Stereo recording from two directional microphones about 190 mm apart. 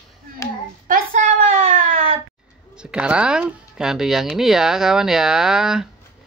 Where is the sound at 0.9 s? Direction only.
40° right (ahead or behind).